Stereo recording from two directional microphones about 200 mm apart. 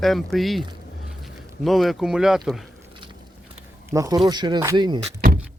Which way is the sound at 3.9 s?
15° right (ahead or behind).